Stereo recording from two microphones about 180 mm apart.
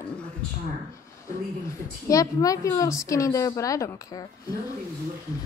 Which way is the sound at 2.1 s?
20° left (ahead or behind).